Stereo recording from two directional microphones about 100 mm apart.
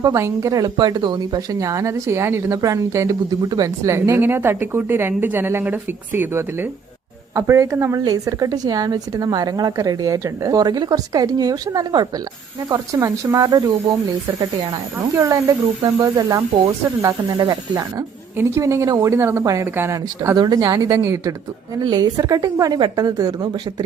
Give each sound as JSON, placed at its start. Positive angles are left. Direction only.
{"t": 0.0, "sound": "a woman's voice", "side_deg": -35}
{"t": 0.8, "sound": "a woman's voice", "side_deg": -45}
{"t": 1.5, "sound": "speech", "side_deg": -35}
{"t": 7.3, "sound": "a woman's voice", "side_deg": -30}
{"t": 15.1, "sound": "a woman's voice", "side_deg": -30}
{"t": 17.3, "sound": "a woman's voice", "side_deg": -45}
{"t": 18.3, "sound": "speech", "side_deg": -30}
{"t": 20.3, "sound": "a woman's voice", "side_deg": -45}
{"t": 21.8, "sound": "a woman's voice", "side_deg": -45}